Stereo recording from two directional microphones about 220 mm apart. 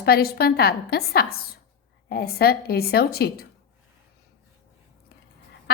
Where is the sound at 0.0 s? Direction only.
45° left (ahead or behind).